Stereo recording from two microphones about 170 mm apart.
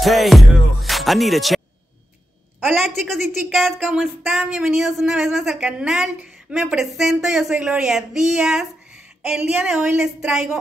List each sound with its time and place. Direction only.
0.0 s music: centre (ahead or behind)
2.6 s a woman's voice: centre (ahead or behind)